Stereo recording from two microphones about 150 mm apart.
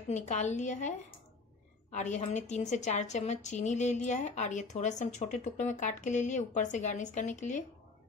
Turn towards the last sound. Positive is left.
turn(degrees=55)  # may be behind; listen again after turning